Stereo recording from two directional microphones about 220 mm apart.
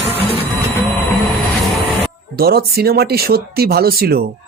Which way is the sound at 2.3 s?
45° right (ahead or behind).